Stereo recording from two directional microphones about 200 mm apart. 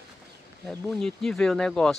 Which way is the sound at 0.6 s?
5° left (ahead or behind).